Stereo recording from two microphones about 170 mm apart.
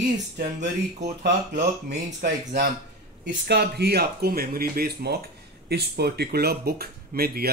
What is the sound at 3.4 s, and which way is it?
Speech, 70° right (ahead or behind).